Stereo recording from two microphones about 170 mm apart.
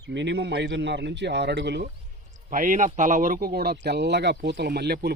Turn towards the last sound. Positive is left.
turn(degrees=-70)  # may be behind; listen again after turning